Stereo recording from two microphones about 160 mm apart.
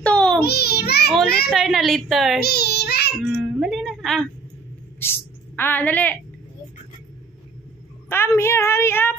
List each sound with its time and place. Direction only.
0.0 s child singing: 5° left (ahead or behind)
0.4 s a child's voice: 85° left
1.5 s a woman's voice: centre (ahead or behind)
2.4 s a child's voice: 80° left
3.2 s speech: centre (ahead or behind)
5.6 s a woman's voice: 10° left (ahead or behind)
8.1 s a woman's voice: 15° left (ahead or behind)